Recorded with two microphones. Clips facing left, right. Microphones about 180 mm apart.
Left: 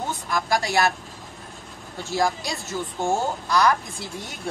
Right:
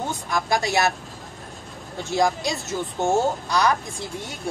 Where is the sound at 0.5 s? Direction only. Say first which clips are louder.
Even; 20° right (ahead or behind).